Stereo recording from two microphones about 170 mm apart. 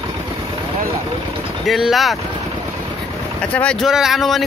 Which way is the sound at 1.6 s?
Centre (ahead or behind).